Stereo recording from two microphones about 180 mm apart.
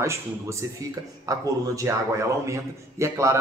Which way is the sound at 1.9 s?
15° right (ahead or behind).